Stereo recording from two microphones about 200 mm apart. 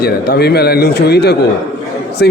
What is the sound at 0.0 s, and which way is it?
A man's voice, 55° left (ahead or behind).